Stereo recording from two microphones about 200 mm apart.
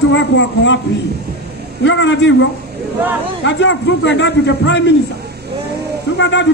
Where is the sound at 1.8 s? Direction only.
65° left (ahead or behind).